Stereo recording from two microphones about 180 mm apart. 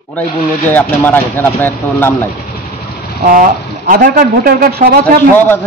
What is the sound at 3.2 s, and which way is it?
Speech, 50° right (ahead or behind).